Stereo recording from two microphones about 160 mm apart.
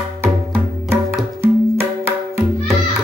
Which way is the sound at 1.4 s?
15° right (ahead or behind).